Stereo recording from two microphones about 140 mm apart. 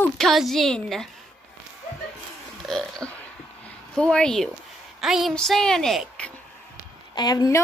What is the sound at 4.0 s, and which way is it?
A woman's voice, 5° left (ahead or behind).